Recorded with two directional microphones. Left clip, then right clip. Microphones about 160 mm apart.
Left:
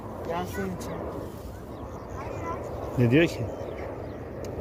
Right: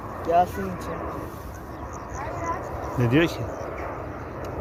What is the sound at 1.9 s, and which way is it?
Vehicle, 20° left (ahead or behind).